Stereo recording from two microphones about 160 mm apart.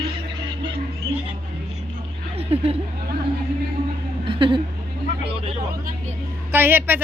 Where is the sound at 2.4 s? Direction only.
40° right (ahead or behind).